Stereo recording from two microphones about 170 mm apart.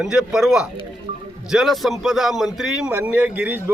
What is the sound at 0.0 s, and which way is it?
Speech, 5° right (ahead or behind).